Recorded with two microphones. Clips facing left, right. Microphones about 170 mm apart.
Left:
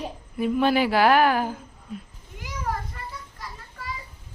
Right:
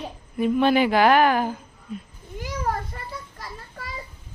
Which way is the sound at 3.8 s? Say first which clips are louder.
Left 3 dB; 35° right (ahead or behind).